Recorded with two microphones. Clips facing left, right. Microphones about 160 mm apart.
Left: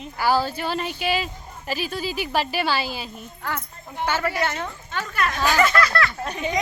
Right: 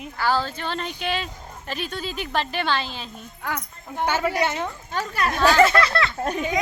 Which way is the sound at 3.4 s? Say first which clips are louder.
Even; 15° right (ahead or behind).